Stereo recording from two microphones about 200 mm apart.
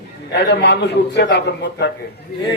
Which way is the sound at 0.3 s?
55° left (ahead or behind).